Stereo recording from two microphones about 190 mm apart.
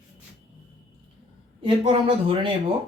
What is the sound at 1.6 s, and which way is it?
Speech, 30° right (ahead or behind).